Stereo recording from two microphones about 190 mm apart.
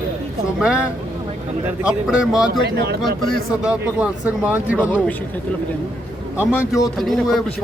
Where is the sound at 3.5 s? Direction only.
5° right (ahead or behind).